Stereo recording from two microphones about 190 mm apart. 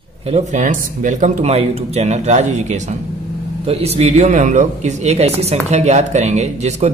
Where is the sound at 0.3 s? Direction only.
40° right (ahead or behind).